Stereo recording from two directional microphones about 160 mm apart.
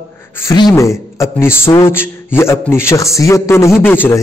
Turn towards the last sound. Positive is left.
turn(degrees=10)  # may be behind; listen again after turning